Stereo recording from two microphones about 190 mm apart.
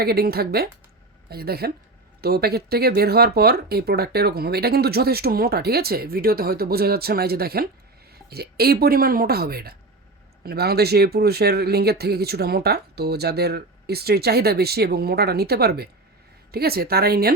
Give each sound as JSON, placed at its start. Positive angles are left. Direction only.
{"t": 0.0, "sound": "speech", "side_deg": -55}